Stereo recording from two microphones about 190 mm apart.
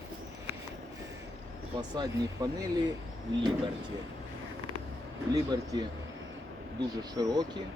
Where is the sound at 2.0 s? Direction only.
20° right (ahead or behind).